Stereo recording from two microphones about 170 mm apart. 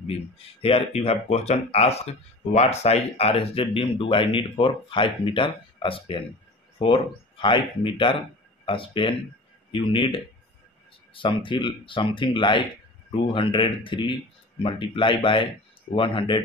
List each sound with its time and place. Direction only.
0.0 s speech: 35° left (ahead or behind)